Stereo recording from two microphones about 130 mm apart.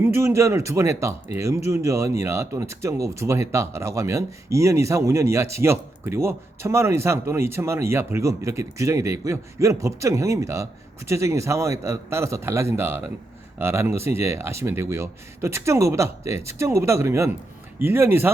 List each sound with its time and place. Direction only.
0.0 s speech: 20° right (ahead or behind)